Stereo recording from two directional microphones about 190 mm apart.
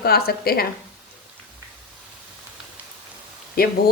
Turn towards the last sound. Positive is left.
turn(degrees=50)  # may be behind; listen again after turning